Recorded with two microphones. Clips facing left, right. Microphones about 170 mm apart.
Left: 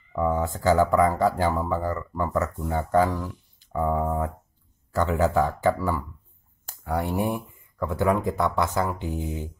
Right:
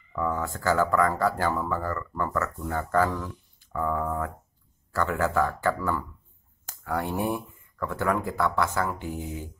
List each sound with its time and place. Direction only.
0.1 s speech: 15° left (ahead or behind)